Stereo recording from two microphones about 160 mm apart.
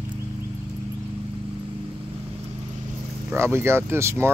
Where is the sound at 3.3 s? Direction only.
15° right (ahead or behind).